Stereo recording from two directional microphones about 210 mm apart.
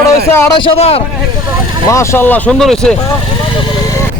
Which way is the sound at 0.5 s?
25° left (ahead or behind).